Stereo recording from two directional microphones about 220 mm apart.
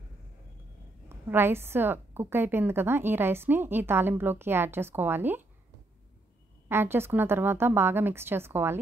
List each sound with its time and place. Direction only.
1.0 s a woman's voice: 10° right (ahead or behind)
6.7 s a woman's voice: 10° right (ahead or behind)